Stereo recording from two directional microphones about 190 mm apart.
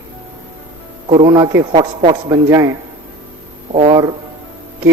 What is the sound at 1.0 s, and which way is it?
A man's voice, 30° right (ahead or behind).